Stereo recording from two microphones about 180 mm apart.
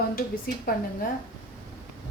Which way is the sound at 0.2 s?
55° left (ahead or behind).